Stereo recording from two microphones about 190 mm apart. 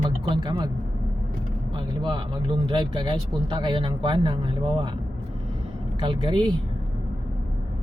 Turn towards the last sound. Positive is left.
turn(degrees=-25)  # may be behind; listen again after turning